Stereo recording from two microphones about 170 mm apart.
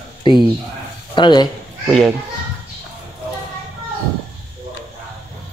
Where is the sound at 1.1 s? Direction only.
25° left (ahead or behind).